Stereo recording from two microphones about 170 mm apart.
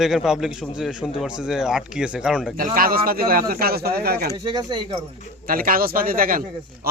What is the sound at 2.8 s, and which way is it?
A man's voice, 60° right (ahead or behind).